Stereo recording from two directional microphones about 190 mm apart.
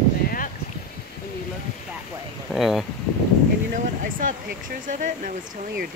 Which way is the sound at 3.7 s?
45° right (ahead or behind).